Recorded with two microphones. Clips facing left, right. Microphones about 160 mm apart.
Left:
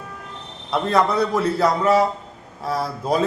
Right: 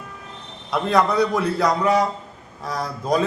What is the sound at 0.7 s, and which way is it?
A man's voice, centre (ahead or behind).